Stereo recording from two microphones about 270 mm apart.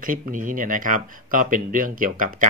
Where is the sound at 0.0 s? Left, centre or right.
Right.